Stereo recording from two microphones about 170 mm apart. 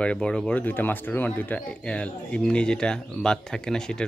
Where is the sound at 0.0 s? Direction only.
5° left (ahead or behind).